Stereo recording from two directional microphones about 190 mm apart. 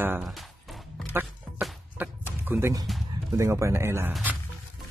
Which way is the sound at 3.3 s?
15° right (ahead or behind).